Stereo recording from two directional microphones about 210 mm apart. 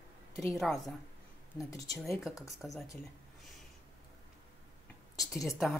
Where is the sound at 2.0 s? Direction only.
Centre (ahead or behind).